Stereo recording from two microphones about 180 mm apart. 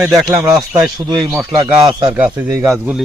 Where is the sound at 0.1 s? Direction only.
20° right (ahead or behind).